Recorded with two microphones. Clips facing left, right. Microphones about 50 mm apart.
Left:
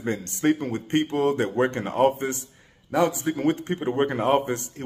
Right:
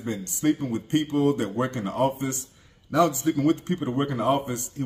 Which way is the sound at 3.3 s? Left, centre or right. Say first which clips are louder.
Right 1 dB; left.